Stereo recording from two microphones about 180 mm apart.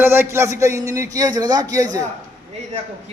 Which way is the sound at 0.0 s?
10° right (ahead or behind).